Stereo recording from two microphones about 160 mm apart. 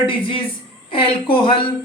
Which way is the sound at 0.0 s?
35° left (ahead or behind).